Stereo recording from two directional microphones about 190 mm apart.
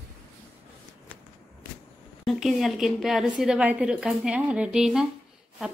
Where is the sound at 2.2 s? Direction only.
Centre (ahead or behind).